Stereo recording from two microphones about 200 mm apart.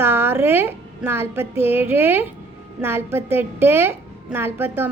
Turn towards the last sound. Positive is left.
turn(degrees=-10)  # may be behind; listen again after turning